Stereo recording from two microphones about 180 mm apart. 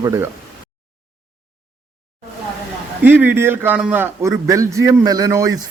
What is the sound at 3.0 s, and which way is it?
A man's voice, 10° right (ahead or behind).